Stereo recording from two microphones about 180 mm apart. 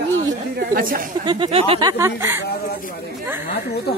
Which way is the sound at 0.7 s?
50° right (ahead or behind).